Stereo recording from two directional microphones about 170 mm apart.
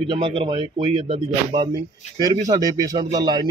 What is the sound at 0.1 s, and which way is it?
Speech, 30° right (ahead or behind).